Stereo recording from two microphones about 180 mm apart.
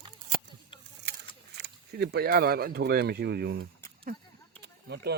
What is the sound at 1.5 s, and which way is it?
Speech, 65° right (ahead or behind).